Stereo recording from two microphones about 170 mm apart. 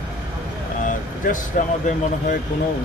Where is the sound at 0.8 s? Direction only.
50° left (ahead or behind).